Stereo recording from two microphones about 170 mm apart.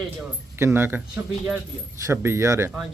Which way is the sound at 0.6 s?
15° right (ahead or behind).